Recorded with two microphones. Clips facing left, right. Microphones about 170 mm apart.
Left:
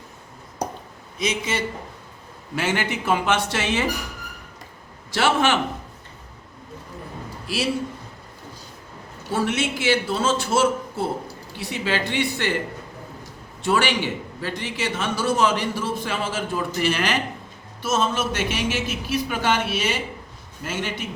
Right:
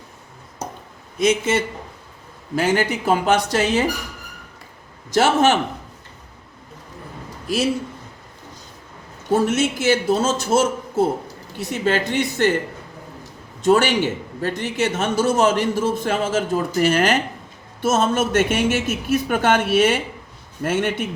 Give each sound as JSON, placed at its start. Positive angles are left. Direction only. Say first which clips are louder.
{"t": 1.2, "sound": "a man's voice", "louder": "right 7 dB", "side_deg": -50}
{"t": 2.6, "sound": "speech", "louder": "right 5 dB", "side_deg": -40}
{"t": 5.1, "sound": "a man's voice", "louder": "right 4 dB", "side_deg": -40}
{"t": 7.4, "sound": "speech", "louder": "right 5 dB", "side_deg": -45}
{"t": 9.3, "sound": "a man's voice", "louder": "right 5 dB", "side_deg": -45}
{"t": 13.7, "sound": "a man's voice", "louder": "right 6 dB", "side_deg": -45}